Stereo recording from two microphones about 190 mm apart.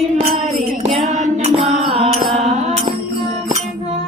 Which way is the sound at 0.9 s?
40° right (ahead or behind).